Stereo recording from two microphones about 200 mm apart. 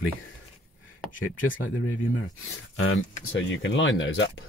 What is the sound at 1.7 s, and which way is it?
Speech, 90° left.